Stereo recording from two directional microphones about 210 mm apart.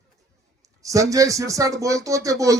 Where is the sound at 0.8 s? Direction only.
15° right (ahead or behind).